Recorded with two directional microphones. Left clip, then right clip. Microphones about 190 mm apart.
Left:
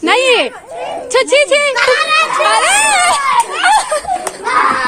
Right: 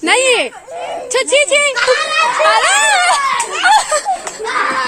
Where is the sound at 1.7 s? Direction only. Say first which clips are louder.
Left 2 dB; 45° left (ahead or behind).